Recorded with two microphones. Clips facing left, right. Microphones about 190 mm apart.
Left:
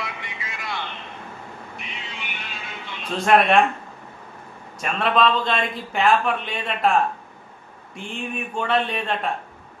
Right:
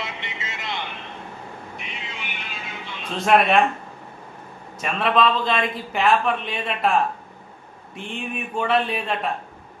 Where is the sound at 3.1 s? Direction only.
Centre (ahead or behind).